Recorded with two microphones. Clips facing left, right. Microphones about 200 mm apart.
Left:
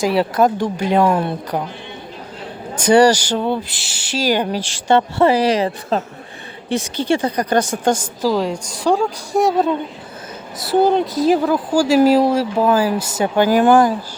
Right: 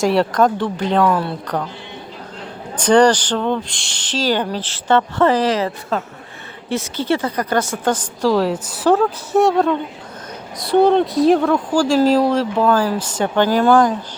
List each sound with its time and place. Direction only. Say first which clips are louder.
0.0 s speech: even; centre (ahead or behind)
1.0 s speech: left 1 dB; 20° left (ahead or behind)
2.7 s speech: left 1 dB; 10° left (ahead or behind)
8.2 s a woman's voice: right 4 dB; centre (ahead or behind)